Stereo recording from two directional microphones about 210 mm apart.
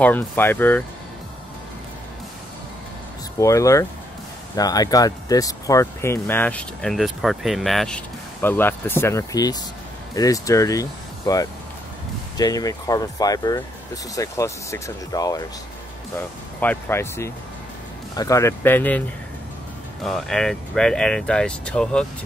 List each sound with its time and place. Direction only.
0.0 s speech: 10° left (ahead or behind)
3.3 s speech: 15° left (ahead or behind)
16.5 s speech: 10° left (ahead or behind)